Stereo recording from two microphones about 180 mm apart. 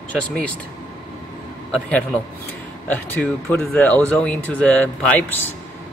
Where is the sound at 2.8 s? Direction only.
10° left (ahead or behind).